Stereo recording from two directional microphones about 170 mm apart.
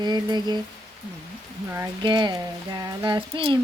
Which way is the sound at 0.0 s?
25° right (ahead or behind).